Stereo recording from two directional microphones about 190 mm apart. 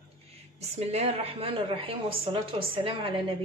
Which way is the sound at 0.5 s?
35° right (ahead or behind).